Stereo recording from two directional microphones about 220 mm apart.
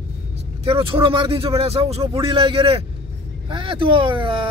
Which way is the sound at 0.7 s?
25° right (ahead or behind).